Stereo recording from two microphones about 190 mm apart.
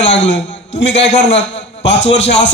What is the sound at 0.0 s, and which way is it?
A man's voice, 70° left (ahead or behind).